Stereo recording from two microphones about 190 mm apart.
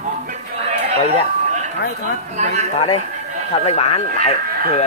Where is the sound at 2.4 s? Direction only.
35° right (ahead or behind).